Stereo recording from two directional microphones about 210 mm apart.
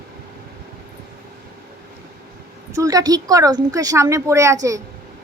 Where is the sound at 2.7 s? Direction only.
15° right (ahead or behind).